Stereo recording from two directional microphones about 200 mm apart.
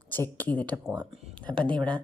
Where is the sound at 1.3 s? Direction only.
5° left (ahead or behind).